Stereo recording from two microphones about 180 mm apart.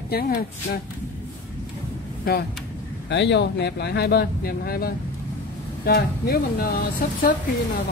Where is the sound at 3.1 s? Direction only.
75° left (ahead or behind); by 7.2 s 55° left (ahead or behind).